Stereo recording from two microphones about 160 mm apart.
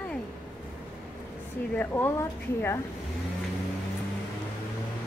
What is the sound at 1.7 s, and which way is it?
A woman's voice, 15° left (ahead or behind).